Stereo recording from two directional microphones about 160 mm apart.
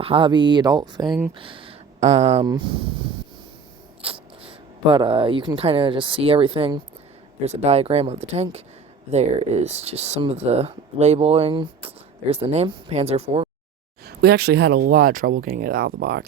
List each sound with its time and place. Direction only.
0.0 s speech: 35° right (ahead or behind)
2.0 s speech: 45° right (ahead or behind)
2.4 s speech: 25° right (ahead or behind)
14.0 s speech: 80° right